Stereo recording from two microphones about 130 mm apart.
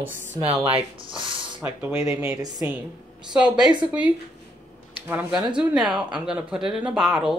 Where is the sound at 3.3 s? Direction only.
5° right (ahead or behind).